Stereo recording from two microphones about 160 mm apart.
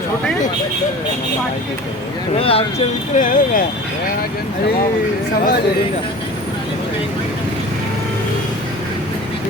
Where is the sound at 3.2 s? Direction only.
55° left (ahead or behind).